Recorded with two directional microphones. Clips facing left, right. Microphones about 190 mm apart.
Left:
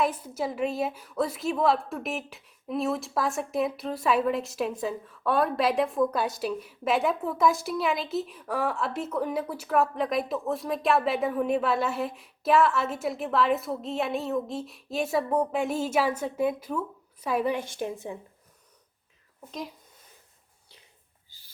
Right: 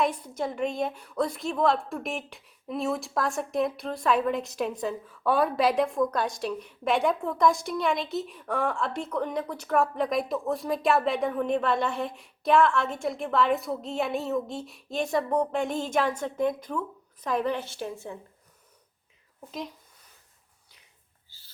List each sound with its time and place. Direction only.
0.0 s a woman's voice: 5° left (ahead or behind)
19.5 s a woman's voice: centre (ahead or behind)
21.2 s a sound: 15° left (ahead or behind)